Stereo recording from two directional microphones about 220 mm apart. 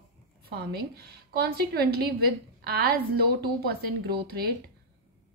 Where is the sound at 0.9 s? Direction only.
45° right (ahead or behind).